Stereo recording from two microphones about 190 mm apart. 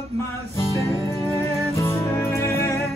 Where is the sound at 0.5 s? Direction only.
15° left (ahead or behind).